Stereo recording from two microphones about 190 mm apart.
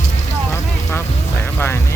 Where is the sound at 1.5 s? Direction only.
15° left (ahead or behind).